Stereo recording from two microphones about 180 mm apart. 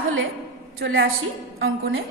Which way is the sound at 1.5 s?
60° right (ahead or behind).